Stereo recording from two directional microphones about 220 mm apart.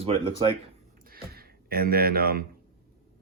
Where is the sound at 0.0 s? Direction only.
25° right (ahead or behind).